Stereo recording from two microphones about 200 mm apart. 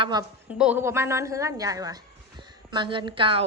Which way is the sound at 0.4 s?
5° right (ahead or behind).